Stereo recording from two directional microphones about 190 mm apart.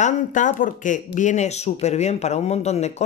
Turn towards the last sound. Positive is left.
turn(degrees=35)  # may be behind; listen again after turning